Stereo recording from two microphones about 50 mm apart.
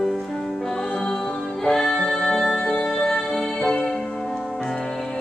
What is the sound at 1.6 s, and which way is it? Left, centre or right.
Music, centre.